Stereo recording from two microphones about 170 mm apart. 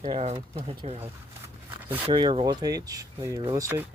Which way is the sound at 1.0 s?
10° right (ahead or behind).